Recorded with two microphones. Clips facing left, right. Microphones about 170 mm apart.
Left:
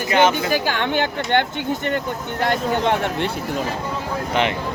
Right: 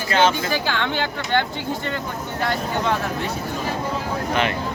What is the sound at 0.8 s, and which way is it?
Speech, 50° left (ahead or behind).